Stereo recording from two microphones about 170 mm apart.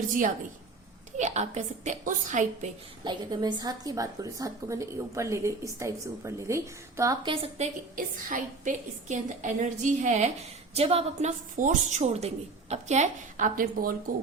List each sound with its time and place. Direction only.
1.1 s a woman's voice: 45° right (ahead or behind)
3.0 s a woman's voice: 25° right (ahead or behind)
7.3 s a woman's voice: 35° right (ahead or behind)
7.9 s a woman's voice: 50° right (ahead or behind)